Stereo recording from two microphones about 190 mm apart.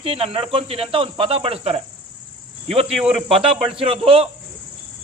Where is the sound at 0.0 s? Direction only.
30° right (ahead or behind).